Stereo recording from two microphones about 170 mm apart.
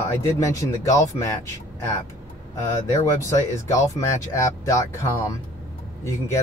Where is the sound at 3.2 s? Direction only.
20° left (ahead or behind).